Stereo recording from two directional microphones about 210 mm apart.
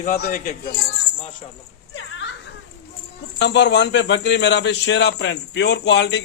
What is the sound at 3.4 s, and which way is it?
A man's voice, 55° left (ahead or behind).